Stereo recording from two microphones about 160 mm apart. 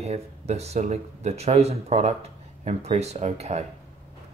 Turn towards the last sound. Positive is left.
turn(degrees=-45)  # may be behind; listen again after turning